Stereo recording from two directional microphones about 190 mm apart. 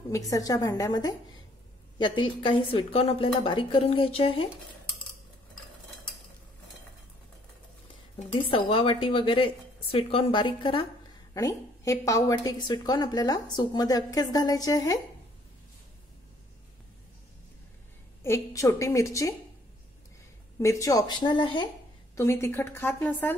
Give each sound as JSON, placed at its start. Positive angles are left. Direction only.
{"t": 0.1, "sound": "a woman's voice", "side_deg": 20}
{"t": 8.2, "sound": "a woman's voice", "side_deg": 30}
{"t": 18.2, "sound": "a woman's voice", "side_deg": 15}
{"t": 20.5, "sound": "a woman's voice", "side_deg": 15}
{"t": 22.1, "sound": "a woman's voice", "side_deg": 15}